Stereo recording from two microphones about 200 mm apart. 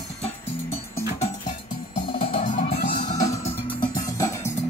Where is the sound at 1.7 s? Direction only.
25° left (ahead or behind).